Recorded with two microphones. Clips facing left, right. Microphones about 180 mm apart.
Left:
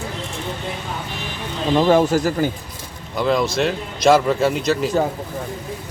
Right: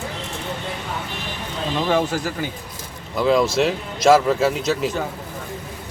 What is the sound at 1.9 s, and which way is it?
Speech, 40° left (ahead or behind).